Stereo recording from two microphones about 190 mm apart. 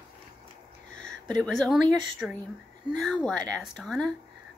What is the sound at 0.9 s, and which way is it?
Speech, 5° left (ahead or behind).